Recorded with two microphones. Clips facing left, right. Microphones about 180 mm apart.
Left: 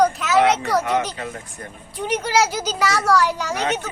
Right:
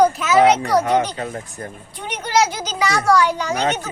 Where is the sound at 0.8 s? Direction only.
30° right (ahead or behind).